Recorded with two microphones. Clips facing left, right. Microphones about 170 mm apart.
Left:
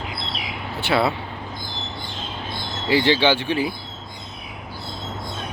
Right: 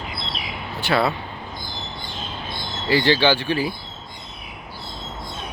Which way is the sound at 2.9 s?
20° left (ahead or behind).